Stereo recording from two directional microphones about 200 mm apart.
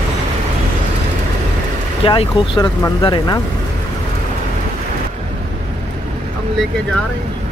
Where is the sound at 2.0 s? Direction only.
25° left (ahead or behind).